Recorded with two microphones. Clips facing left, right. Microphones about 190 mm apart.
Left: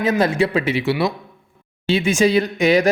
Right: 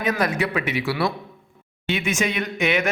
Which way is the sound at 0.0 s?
25° left (ahead or behind).